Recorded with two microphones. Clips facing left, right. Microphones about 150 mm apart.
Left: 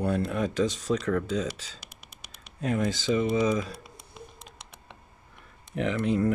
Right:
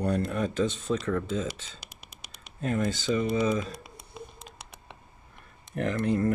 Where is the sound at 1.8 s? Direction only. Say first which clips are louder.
Right 1 dB; 90° right.